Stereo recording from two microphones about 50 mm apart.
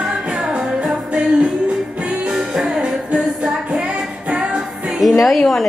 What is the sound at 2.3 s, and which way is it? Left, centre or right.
Music, centre.